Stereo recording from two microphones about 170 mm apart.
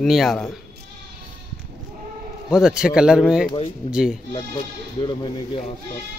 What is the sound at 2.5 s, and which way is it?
Speech, 5° right (ahead or behind).